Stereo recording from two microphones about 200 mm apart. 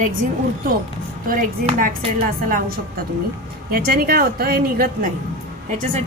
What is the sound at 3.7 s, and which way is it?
A woman's voice, 45° right (ahead or behind).